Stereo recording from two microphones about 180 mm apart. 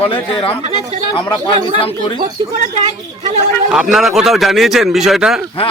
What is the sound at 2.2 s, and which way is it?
Speech, 45° right (ahead or behind).